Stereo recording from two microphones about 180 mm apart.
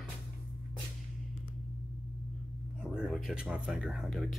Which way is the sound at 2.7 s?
5° right (ahead or behind).